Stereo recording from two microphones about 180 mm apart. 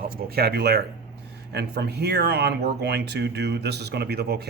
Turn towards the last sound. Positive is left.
turn(degrees=-65)  # may be behind; listen again after turning